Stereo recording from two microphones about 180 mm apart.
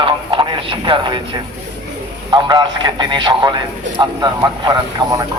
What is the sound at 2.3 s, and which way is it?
Speech, 25° right (ahead or behind).